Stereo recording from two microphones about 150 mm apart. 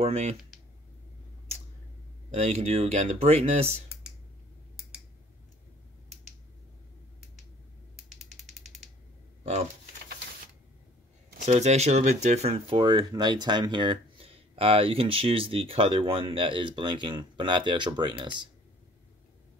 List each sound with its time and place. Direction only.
0.0 s speech: 45° right (ahead or behind)
2.3 s speech: 45° right (ahead or behind)
8.4 s mechanisms: centre (ahead or behind)
9.4 s a sound: 45° right (ahead or behind)
11.4 s speech: 50° right (ahead or behind); by 18.3 s 30° right (ahead or behind)